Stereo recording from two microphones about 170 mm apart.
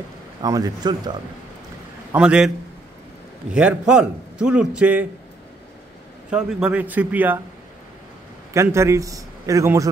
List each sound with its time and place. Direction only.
0.4 s speech: 20° right (ahead or behind)
2.1 s a man's voice: 5° right (ahead or behind)
3.5 s a man's voice: 5° right (ahead or behind)
6.3 s a man's voice: 5° right (ahead or behind)
8.5 s a man's voice: 15° right (ahead or behind)